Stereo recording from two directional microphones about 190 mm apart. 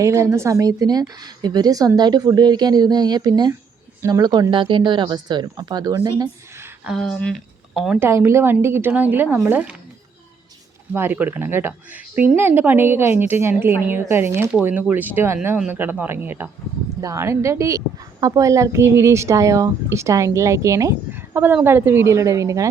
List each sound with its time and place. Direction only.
0.0 s a woman's voice: 15° right (ahead or behind)
6.8 s a woman's voice: centre (ahead or behind)
10.9 s a woman's voice: 10° right (ahead or behind)